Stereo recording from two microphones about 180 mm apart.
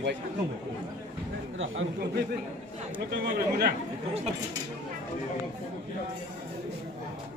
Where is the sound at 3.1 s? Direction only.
60° right (ahead or behind).